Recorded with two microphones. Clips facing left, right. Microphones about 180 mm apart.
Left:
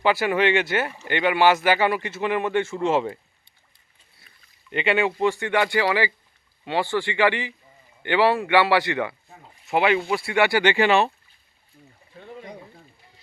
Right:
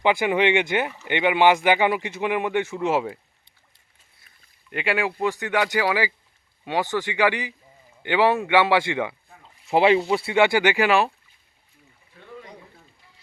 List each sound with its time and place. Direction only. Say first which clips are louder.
0.0 s speech: even; 15° right (ahead or behind)
4.7 s speech: left 3 dB; centre (ahead or behind)
9.6 s speech: right 3 dB; 30° right (ahead or behind); by 11.1 s centre (ahead or behind)
12.1 s a sound: left 6 dB; 25° left (ahead or behind)